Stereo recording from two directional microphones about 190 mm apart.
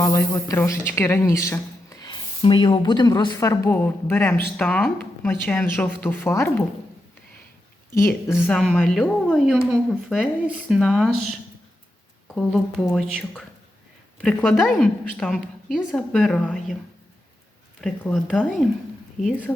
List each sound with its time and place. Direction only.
0.0 s a woman's voice: 15° left (ahead or behind)
7.9 s a woman's voice: 15° left (ahead or behind)
17.7 s a woman's voice: centre (ahead or behind)